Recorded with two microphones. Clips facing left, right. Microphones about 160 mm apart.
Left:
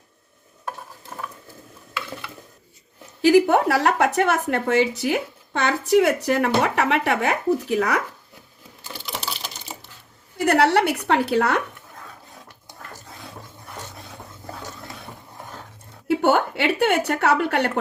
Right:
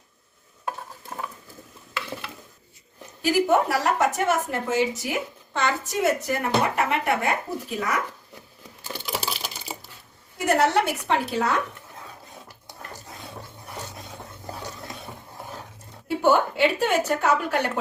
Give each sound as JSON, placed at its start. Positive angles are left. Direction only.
{"t": 3.2, "sound": "a woman's voice", "side_deg": 70}
{"t": 9.1, "sound": "sewing machine", "side_deg": -5}
{"t": 10.3, "sound": "a woman's voice", "side_deg": 65}
{"t": 16.0, "sound": "a sound", "side_deg": 70}